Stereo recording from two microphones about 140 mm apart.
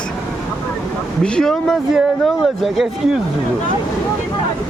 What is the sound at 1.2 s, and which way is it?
Speech, 5° left (ahead or behind).